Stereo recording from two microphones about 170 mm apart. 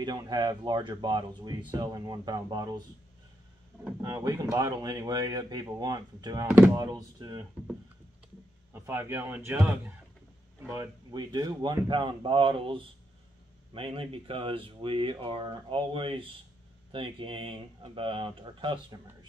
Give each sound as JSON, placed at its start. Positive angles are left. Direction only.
{"t": 0.0, "sound": "speech", "side_deg": -25}
{"t": 4.0, "sound": "speech", "side_deg": -20}
{"t": 8.7, "sound": "speech", "side_deg": -15}
{"t": 10.7, "sound": "speech", "side_deg": -20}